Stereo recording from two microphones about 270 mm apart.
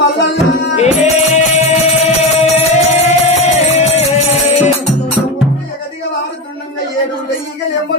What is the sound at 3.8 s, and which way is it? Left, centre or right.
Music, left.